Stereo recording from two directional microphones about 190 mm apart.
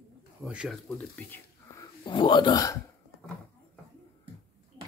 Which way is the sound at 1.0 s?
10° left (ahead or behind).